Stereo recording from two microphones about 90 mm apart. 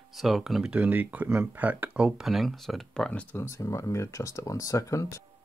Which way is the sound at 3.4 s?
30° left (ahead or behind).